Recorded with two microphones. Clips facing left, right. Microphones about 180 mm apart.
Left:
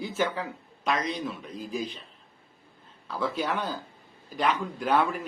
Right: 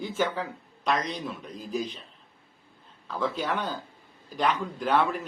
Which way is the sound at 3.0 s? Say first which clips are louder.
Even; 5° left (ahead or behind).